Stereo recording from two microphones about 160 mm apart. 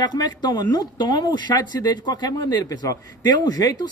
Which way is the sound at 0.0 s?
25° left (ahead or behind).